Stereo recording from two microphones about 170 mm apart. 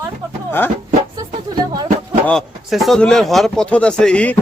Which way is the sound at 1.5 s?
20° right (ahead or behind).